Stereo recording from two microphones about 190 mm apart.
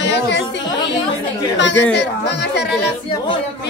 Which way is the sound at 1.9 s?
65° left (ahead or behind).